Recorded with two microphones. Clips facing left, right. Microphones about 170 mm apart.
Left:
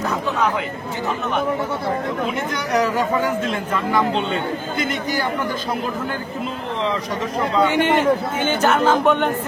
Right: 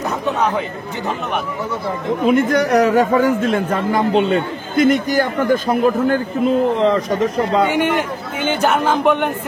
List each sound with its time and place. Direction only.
2.2 s a man's voice: 55° right (ahead or behind)
3.5 s a man's voice: 40° right (ahead or behind)
8.6 s speech: 15° right (ahead or behind)